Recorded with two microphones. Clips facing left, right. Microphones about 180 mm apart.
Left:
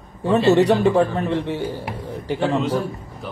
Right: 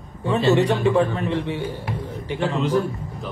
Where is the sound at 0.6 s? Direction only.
40° left (ahead or behind).